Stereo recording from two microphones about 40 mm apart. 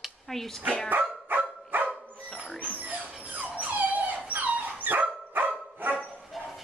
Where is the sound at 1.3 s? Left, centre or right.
Right.